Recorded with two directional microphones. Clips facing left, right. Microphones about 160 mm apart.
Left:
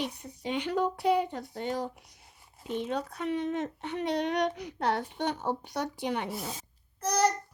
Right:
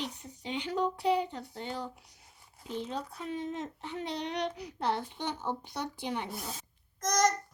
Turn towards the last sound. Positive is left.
turn(degrees=10)  # may be behind; listen again after turning